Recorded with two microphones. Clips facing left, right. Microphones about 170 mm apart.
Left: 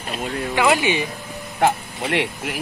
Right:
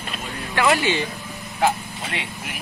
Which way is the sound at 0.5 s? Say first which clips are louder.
Left 1 dB; 15° left (ahead or behind).